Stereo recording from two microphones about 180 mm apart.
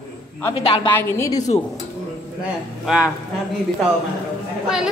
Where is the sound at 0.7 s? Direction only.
30° left (ahead or behind).